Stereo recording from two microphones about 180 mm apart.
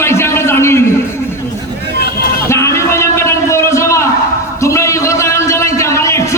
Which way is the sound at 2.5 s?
15° left (ahead or behind).